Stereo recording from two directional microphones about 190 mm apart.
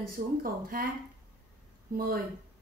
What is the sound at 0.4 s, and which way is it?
Speech, 50° right (ahead or behind).